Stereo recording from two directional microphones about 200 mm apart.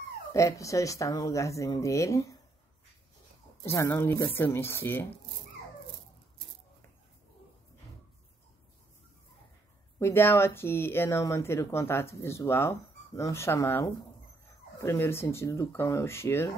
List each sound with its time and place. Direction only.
0.3 s speech: 15° left (ahead or behind)
3.6 s speech: 15° left (ahead or behind)
9.9 s speech: 10° left (ahead or behind)